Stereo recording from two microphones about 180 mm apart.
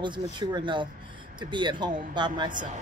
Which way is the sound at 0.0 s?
25° right (ahead or behind).